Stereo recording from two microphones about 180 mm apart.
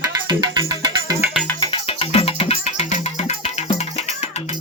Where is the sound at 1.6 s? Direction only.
30° left (ahead or behind).